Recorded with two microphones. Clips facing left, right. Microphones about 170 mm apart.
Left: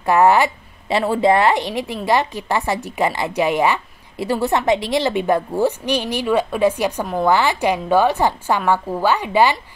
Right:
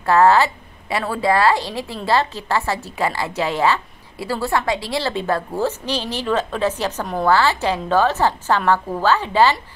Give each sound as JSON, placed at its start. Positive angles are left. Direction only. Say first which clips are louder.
{"t": 0.0, "sound": "a woman's voice", "louder": "even", "side_deg": 15}